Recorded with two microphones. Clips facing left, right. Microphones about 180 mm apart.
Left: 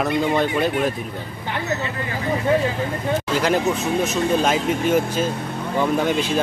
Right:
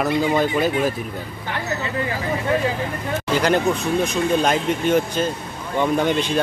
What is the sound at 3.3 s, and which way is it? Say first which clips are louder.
Speech: right 3 dB; centre (ahead or behind).